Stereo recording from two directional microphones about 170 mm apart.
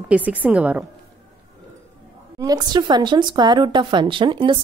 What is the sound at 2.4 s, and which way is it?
Speech, 20° right (ahead or behind).